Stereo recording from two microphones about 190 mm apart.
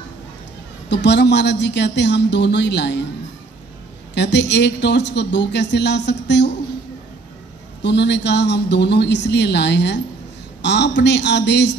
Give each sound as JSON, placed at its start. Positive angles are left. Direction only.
{"t": 0.8, "sound": "a woman's voice", "side_deg": 65}
{"t": 4.1, "sound": "a woman's voice", "side_deg": 65}
{"t": 7.8, "sound": "a woman's voice", "side_deg": 65}